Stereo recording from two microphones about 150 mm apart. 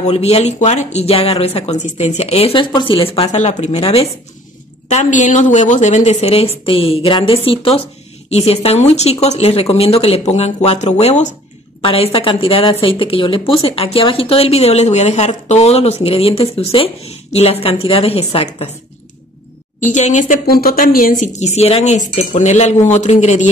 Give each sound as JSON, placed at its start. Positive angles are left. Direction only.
{"t": 0.0, "sound": "speech", "side_deg": 45}
{"t": 4.8, "sound": "speech", "side_deg": 50}
{"t": 19.8, "sound": "speech", "side_deg": 55}
{"t": 20.4, "sound": "speech", "side_deg": 85}